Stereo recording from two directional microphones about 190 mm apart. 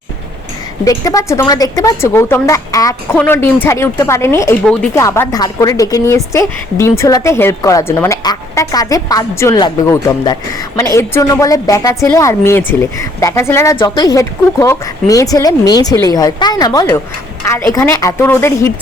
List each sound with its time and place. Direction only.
0.9 s a woman's voice: 15° left (ahead or behind)